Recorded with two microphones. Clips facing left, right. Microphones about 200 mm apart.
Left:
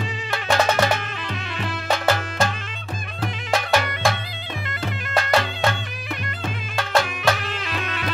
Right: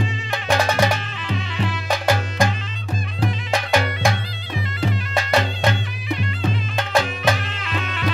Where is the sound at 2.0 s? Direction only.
15° right (ahead or behind).